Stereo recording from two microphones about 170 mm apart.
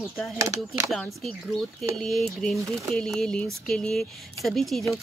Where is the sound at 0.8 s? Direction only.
Centre (ahead or behind).